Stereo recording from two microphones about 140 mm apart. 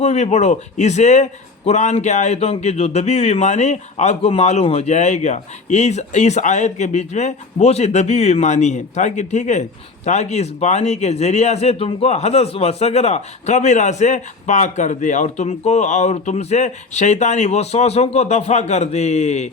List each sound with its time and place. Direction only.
0.0 s a man's voice: 55° left (ahead or behind)